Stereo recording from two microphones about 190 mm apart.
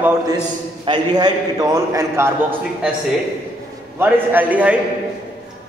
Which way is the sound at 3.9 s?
10° right (ahead or behind).